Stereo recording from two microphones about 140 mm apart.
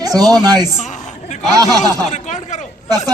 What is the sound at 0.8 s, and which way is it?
A man's voice, 60° left (ahead or behind).